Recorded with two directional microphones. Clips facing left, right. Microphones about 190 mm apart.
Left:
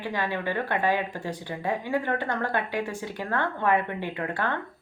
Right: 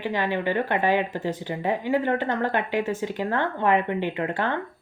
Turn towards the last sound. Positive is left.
turn(degrees=-20)  # may be behind; listen again after turning